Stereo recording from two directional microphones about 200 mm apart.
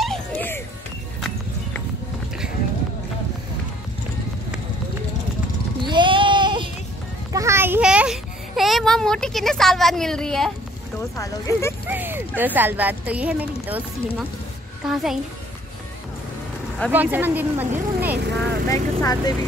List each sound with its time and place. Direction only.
0.0 s music: 5° left (ahead or behind)
5.8 s a sound: 25° right (ahead or behind)
7.3 s a sound: 15° right (ahead or behind); by 10.5 s 5° left (ahead or behind)
11.1 s speech: 15° left (ahead or behind)
11.9 s a child's voice: 10° right (ahead or behind)
16.9 s speech: 10° right (ahead or behind)
18.7 s speech: 20° left (ahead or behind)